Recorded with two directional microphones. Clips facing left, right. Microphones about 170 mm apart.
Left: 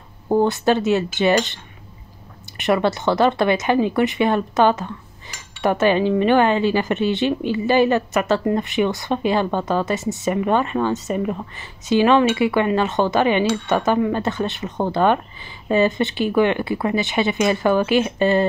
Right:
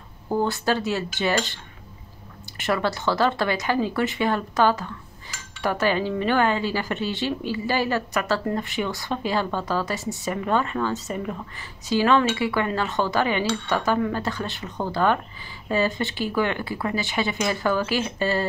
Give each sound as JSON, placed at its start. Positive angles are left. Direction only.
{"t": 0.3, "sound": "speech", "side_deg": 20}